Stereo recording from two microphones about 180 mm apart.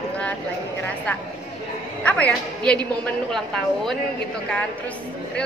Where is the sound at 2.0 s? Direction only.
10° left (ahead or behind).